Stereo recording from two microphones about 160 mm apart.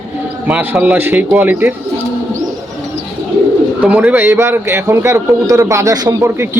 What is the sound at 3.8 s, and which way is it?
A man's voice, 10° right (ahead or behind).